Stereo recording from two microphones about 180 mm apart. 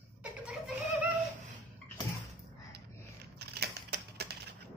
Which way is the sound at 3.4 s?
65° right (ahead or behind).